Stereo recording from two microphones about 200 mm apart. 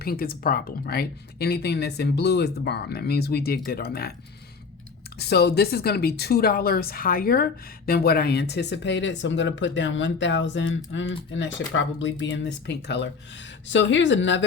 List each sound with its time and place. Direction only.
0.0 s speech: 50° left (ahead or behind)
5.2 s speech: 55° left (ahead or behind)